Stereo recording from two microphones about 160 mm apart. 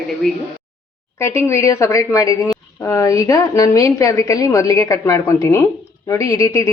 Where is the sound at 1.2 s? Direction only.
15° left (ahead or behind).